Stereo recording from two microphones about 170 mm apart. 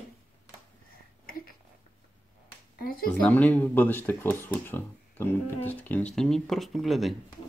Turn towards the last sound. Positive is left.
turn(degrees=0)  # may be behind; listen again after turning